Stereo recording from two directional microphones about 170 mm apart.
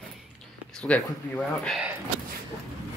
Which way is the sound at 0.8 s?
5° left (ahead or behind).